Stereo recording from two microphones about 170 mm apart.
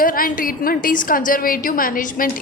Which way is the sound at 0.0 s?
55° left (ahead or behind).